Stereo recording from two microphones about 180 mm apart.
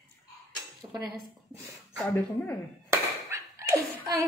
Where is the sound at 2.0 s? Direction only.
5° left (ahead or behind).